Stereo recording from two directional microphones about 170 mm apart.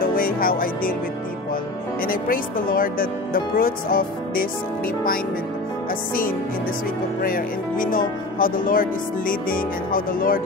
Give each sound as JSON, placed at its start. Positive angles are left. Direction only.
{"t": 0.0, "sound": "music", "side_deg": 55}
{"t": 2.0, "sound": "speech", "side_deg": 55}
{"t": 7.2, "sound": "speech", "side_deg": 55}